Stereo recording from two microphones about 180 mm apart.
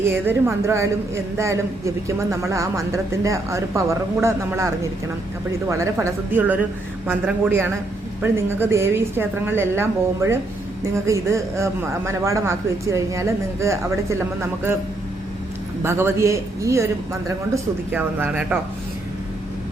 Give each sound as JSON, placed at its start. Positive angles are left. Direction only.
{"t": 0.0, "sound": "a woman's voice", "side_deg": -15}
{"t": 15.8, "sound": "a woman's voice", "side_deg": -15}